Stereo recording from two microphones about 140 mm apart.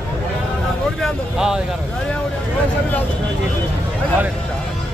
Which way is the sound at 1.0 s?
5° right (ahead or behind).